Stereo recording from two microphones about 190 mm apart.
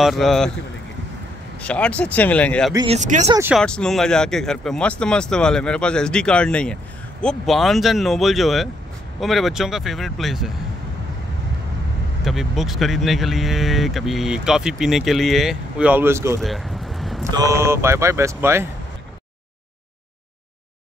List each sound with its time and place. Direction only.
0.0 s speech: centre (ahead or behind)
1.6 s speech: 5° left (ahead or behind)
2.9 s speech: 40° right (ahead or behind)
3.3 s speech: 15° right (ahead or behind)
3.5 s speech: 5° left (ahead or behind)
12.3 s speech: centre (ahead or behind)
16.3 s a sound: centre (ahead or behind)
17.2 s speech: 20° right (ahead or behind)